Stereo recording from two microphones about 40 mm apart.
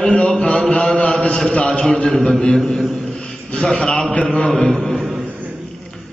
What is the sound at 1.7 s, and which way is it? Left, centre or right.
Speech, centre.